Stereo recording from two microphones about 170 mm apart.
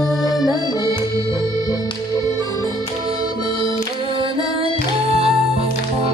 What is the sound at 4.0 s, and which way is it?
Music, 30° right (ahead or behind).